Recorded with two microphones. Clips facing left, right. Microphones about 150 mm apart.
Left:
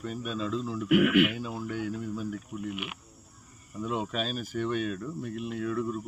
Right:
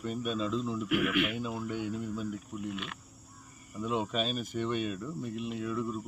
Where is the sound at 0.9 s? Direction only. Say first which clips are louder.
Left 9 dB; 80° left.